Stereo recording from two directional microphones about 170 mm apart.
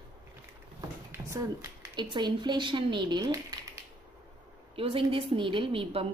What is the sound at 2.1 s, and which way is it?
Speech, 25° right (ahead or behind).